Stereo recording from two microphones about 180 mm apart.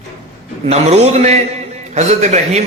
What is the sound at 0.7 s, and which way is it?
A man's voice, 35° right (ahead or behind).